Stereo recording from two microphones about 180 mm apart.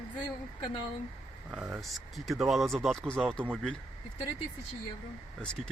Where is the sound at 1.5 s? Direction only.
5° right (ahead or behind).